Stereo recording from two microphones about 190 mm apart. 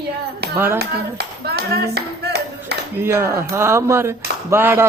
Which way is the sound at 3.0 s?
15° right (ahead or behind).